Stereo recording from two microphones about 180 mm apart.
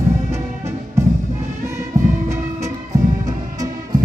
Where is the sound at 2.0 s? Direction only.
45° right (ahead or behind).